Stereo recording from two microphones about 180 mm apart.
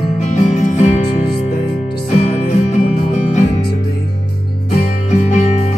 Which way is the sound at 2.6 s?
40° left (ahead or behind).